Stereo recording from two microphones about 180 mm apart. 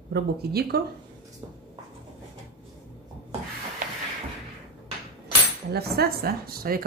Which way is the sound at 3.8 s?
45° right (ahead or behind).